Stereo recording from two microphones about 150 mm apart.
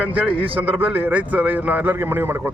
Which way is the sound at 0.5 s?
10° right (ahead or behind).